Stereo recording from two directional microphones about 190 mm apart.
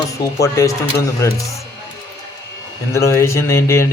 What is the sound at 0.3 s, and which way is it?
Speech, 15° left (ahead or behind).